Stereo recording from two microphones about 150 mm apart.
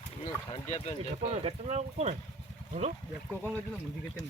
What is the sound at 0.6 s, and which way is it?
Speech, 45° left (ahead or behind).